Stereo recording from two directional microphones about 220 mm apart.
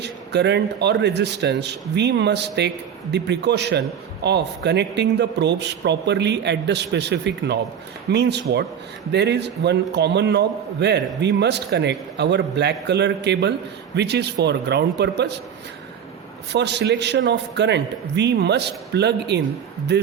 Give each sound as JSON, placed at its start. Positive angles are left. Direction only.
{"t": 0.0, "sound": "a man's voice", "side_deg": -50}
{"t": 16.5, "sound": "a man's voice", "side_deg": -50}